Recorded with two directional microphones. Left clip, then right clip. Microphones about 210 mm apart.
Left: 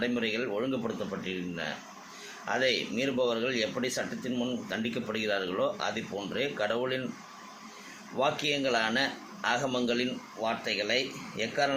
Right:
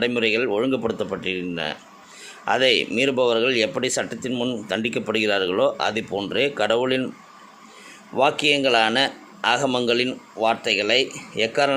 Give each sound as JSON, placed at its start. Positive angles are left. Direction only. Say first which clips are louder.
{"t": 0.0, "sound": "speech", "louder": "right 10 dB", "side_deg": -50}
{"t": 8.1, "sound": "speech", "louder": "right 10 dB", "side_deg": -50}